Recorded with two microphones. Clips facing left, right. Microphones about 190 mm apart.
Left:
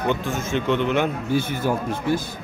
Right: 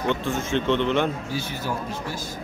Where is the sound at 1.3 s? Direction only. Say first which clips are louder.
Left 7 dB; 55° left (ahead or behind).